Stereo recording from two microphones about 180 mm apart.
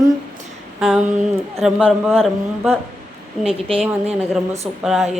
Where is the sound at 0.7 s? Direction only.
5° right (ahead or behind).